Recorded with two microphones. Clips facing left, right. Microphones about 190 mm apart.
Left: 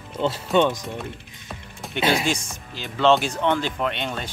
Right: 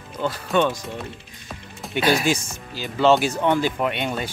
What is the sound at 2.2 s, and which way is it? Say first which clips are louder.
Speech: right 3 dB; 5° right (ahead or behind).